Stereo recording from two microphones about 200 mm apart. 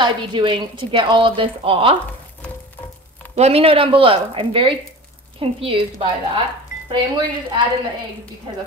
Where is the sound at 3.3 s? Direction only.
30° right (ahead or behind).